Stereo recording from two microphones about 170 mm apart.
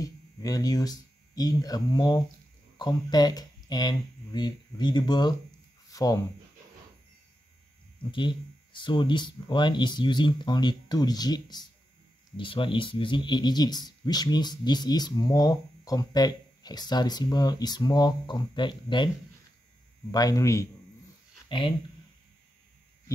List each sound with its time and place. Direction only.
0.0 s speech: 20° left (ahead or behind)
8.0 s speech: 30° left (ahead or behind)
20.1 s speech: 20° left (ahead or behind)
21.5 s speech: 30° left (ahead or behind)